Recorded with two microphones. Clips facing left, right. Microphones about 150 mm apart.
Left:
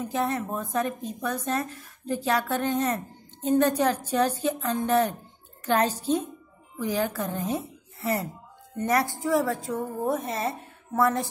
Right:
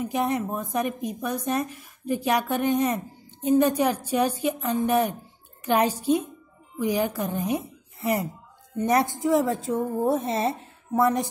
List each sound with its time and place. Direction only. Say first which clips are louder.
0.0 s a woman's voice: right 2 dB; 15° right (ahead or behind)